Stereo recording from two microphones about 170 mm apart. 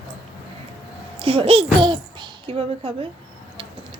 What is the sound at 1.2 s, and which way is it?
A child's voice, 35° right (ahead or behind).